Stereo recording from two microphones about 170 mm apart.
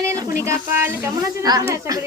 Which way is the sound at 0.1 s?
15° right (ahead or behind).